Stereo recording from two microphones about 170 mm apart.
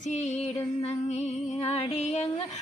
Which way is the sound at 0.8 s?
40° left (ahead or behind).